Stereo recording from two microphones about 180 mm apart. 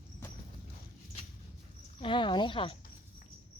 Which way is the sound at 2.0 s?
25° left (ahead or behind).